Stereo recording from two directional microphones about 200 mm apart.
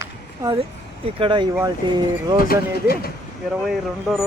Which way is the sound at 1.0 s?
25° right (ahead or behind).